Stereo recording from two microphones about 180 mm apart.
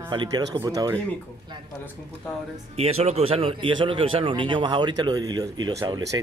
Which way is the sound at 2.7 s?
35° right (ahead or behind).